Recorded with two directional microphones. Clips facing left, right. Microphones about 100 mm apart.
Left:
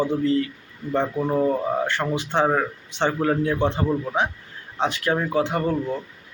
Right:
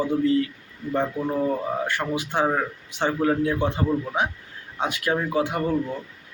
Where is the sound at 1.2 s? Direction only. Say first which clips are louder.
Left 3 dB; 20° left (ahead or behind).